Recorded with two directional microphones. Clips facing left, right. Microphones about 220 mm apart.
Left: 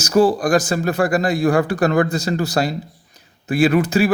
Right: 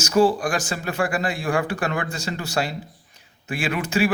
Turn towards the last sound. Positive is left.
turn(degrees=40)  # may be behind; listen again after turning